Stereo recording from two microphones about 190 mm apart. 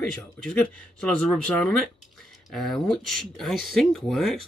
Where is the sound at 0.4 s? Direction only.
5° left (ahead or behind).